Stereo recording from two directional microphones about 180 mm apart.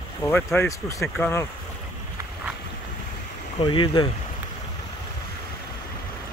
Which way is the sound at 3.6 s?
25° left (ahead or behind).